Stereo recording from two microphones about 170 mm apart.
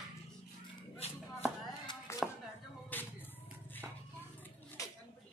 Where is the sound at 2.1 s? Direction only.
15° left (ahead or behind).